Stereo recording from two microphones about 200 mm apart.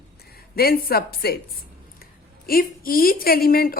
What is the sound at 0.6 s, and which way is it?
Speech, 50° left (ahead or behind).